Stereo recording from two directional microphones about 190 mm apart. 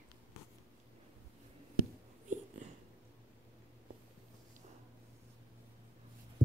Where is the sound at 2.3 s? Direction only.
40° right (ahead or behind).